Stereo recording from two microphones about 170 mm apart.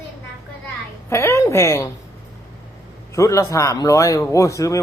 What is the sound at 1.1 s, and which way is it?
Speech, 15° left (ahead or behind).